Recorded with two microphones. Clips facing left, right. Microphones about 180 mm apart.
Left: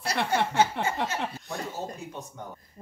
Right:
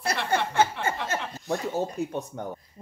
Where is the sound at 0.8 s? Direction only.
55° left (ahead or behind).